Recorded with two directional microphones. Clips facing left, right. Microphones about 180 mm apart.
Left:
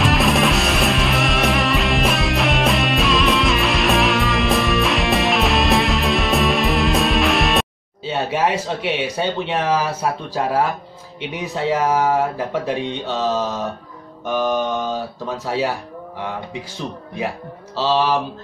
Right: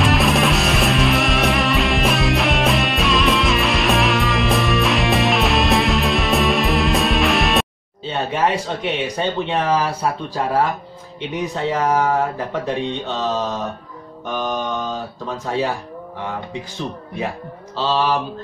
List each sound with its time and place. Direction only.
0.0 s music: centre (ahead or behind)
11.1 s speech: 10° left (ahead or behind)
12.6 s mantra: 5° left (ahead or behind)
14.2 s speech: 10° left (ahead or behind)
17.7 s speech: 10° left (ahead or behind)